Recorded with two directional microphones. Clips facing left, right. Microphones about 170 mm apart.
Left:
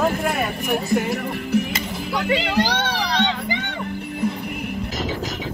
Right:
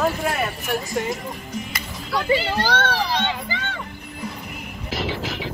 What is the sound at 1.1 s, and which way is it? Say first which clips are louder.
Speech: left 7 dB; 70° left (ahead or behind).